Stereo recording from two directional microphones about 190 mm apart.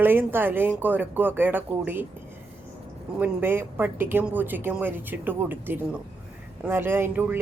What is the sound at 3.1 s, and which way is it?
A woman's voice, 10° right (ahead or behind).